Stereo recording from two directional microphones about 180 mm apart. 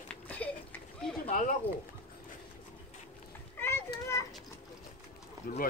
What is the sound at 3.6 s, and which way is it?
Children playing, 15° left (ahead or behind).